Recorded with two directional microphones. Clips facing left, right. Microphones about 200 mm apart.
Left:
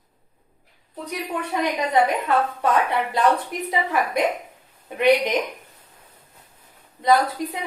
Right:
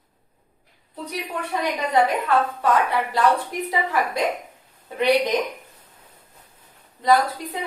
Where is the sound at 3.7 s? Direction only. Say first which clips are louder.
Left 1 dB; 20° left (ahead or behind).